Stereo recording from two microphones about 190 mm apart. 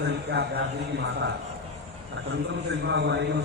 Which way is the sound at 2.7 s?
65° right (ahead or behind).